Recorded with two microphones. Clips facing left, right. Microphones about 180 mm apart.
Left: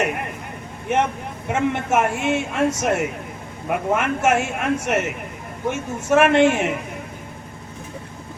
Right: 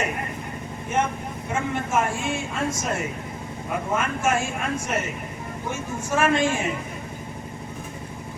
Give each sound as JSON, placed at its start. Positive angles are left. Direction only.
{"t": 0.9, "sound": "speech", "side_deg": 70}